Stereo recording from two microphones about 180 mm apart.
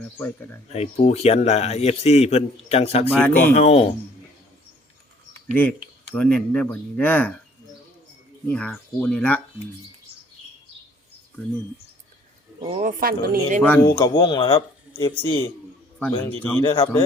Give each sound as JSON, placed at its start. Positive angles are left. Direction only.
{"t": 0.0, "sound": "speech", "side_deg": 10}
{"t": 0.7, "sound": "a man's voice", "side_deg": 35}
{"t": 3.1, "sound": "speech", "side_deg": 10}
{"t": 3.3, "sound": "a man's voice", "side_deg": 40}
{"t": 5.5, "sound": "speech", "side_deg": 5}
{"t": 8.4, "sound": "speech", "side_deg": 5}
{"t": 12.5, "sound": "speech", "side_deg": -35}
{"t": 12.8, "sound": "speech", "side_deg": -50}
{"t": 13.6, "sound": "speech", "side_deg": 10}
{"t": 14.2, "sound": "speech", "side_deg": 30}
{"t": 14.9, "sound": "speech", "side_deg": 15}